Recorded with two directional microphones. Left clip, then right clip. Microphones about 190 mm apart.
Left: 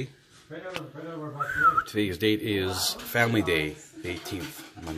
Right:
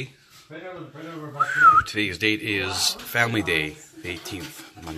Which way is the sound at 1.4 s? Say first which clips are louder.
Right 7 dB; 15° left (ahead or behind).